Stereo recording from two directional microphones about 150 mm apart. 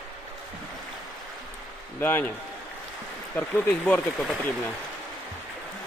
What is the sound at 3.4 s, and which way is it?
Speech, 10° left (ahead or behind).